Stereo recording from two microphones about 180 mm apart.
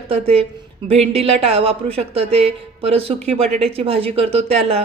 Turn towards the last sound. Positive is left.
turn(degrees=-35)  # may be behind; listen again after turning